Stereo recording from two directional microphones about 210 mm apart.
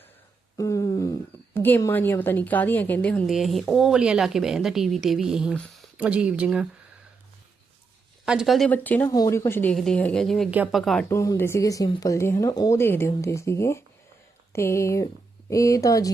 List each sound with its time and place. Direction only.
0.5 s humming: 15° left (ahead or behind)
1.5 s a woman's voice: 10° left (ahead or behind); by 6.7 s 5° right (ahead or behind)
8.2 s a woman's voice: 5° right (ahead or behind)
11.1 s speech: 15° left (ahead or behind)